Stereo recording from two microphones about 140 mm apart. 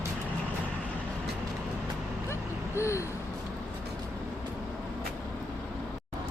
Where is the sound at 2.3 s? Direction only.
20° left (ahead or behind).